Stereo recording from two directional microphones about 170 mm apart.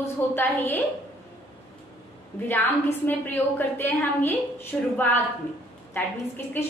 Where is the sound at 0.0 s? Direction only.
15° left (ahead or behind).